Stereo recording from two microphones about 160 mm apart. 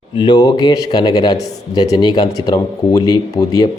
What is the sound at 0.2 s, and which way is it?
Speech, 25° left (ahead or behind).